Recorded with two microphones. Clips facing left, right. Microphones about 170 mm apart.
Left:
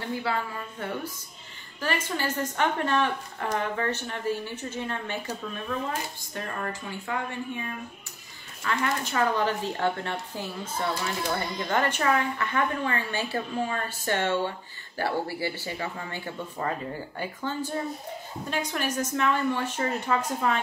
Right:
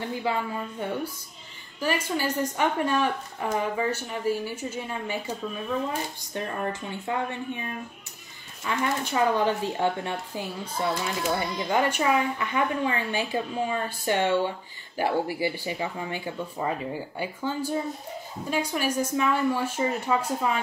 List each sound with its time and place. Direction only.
0.2 s a woman's voice: 15° right (ahead or behind)
6.3 s speech: 20° right (ahead or behind)
8.6 s a woman's voice: 15° right (ahead or behind)